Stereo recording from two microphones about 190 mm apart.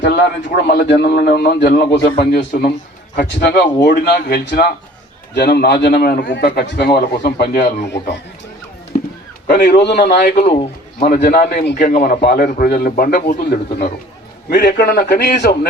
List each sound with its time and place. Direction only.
0.0 s a man's voice: 60° left (ahead or behind)
9.5 s a man's voice: 45° left (ahead or behind)
10.4 s a man's voice: 35° left (ahead or behind)
11.0 s a man's voice: 50° left (ahead or behind)